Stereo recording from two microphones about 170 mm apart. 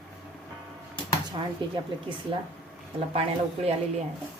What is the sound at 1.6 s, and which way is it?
Speech, 30° right (ahead or behind).